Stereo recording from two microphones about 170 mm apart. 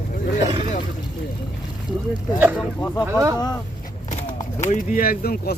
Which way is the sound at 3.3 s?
25° left (ahead or behind).